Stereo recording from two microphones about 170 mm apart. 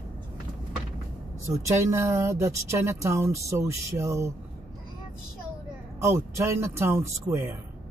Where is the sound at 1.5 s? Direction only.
20° right (ahead or behind).